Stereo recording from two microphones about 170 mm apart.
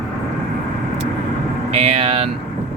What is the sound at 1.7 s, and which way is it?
Speech, 35° right (ahead or behind).